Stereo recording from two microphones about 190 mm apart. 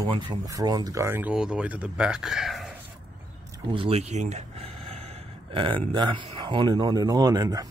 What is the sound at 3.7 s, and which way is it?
Speech, 30° right (ahead or behind).